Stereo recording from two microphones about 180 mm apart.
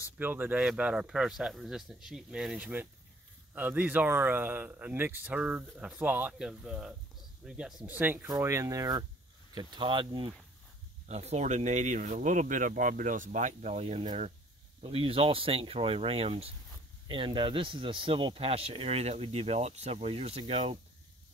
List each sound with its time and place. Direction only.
0.2 s speech: 10° right (ahead or behind); by 10.3 s 25° right (ahead or behind)
11.1 s speech: 35° right (ahead or behind)